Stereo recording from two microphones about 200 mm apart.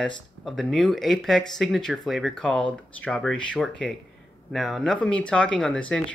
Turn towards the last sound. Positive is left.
turn(degrees=5)  # may be behind; listen again after turning